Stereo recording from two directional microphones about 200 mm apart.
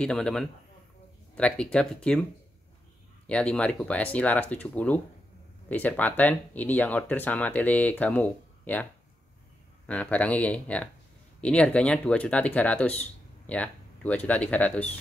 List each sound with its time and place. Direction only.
0.0 s speech: 5° left (ahead or behind)
3.3 s speech: 5° left (ahead or behind)
9.8 s speech: 5° left (ahead or behind)